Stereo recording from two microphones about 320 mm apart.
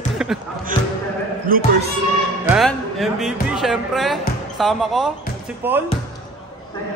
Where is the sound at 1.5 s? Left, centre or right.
Right.